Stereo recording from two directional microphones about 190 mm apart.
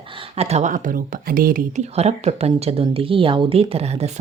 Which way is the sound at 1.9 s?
35° right (ahead or behind).